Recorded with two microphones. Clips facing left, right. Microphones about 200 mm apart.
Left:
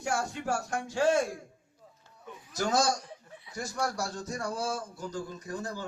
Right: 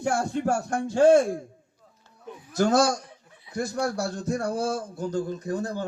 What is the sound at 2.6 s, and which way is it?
A man's voice, 55° right (ahead or behind).